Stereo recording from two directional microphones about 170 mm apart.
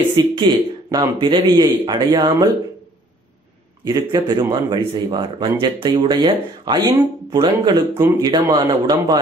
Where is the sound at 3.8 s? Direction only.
25° right (ahead or behind).